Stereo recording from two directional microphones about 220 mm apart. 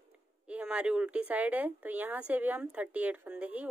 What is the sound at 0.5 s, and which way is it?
Speech, 5° right (ahead or behind).